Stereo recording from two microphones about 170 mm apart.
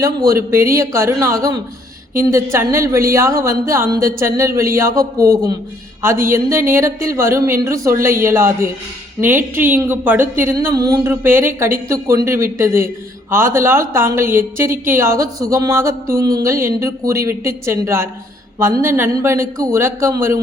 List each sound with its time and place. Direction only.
0.0 s a man's voice: 20° right (ahead or behind)